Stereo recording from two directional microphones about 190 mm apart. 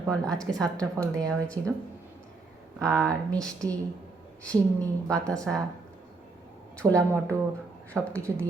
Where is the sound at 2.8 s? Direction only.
5° left (ahead or behind).